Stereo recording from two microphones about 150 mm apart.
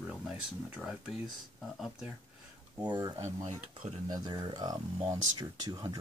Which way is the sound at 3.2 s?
50° right (ahead or behind).